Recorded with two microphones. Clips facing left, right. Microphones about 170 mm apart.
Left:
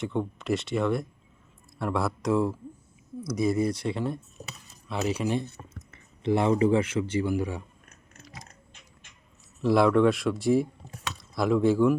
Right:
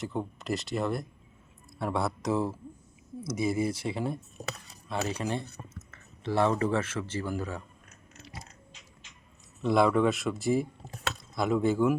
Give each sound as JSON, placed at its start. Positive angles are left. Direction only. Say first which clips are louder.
{"t": 0.0, "sound": "speech", "louder": "left 4 dB", "side_deg": -5}
{"t": 4.4, "sound": "cutlery", "louder": "right 7 dB", "side_deg": -75}
{"t": 4.9, "sound": "speech", "louder": "left 4 dB", "side_deg": 5}
{"t": 5.9, "sound": "speech", "louder": "left 5 dB", "side_deg": 15}
{"t": 9.6, "sound": "speech", "louder": "left 3 dB", "side_deg": 0}